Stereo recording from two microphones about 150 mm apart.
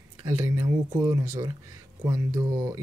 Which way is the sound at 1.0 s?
20° right (ahead or behind).